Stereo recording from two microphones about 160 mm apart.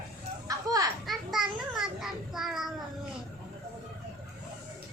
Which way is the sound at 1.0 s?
Centre (ahead or behind).